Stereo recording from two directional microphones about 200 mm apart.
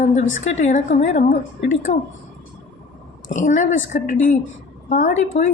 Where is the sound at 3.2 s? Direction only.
40° left (ahead or behind).